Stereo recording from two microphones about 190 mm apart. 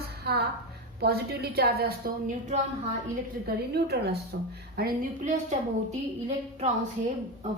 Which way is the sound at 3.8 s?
60° right (ahead or behind).